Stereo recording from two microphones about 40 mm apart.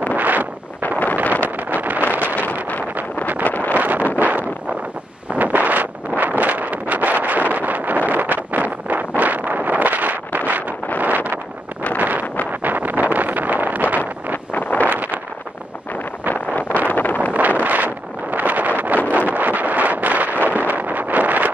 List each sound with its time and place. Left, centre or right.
0.1 s wind noise: right
0.8 s wind noise: left
1.8 s vehicle: right
2.3 s wind noise: left
3.4 s vehicle: left
3.7 s wind noise: right
12.6 s wind noise: right
14.5 s vehicle: left
14.9 s vehicle: right
16.5 s vehicle: left
17.3 s wind noise: right
20.4 s a sound: right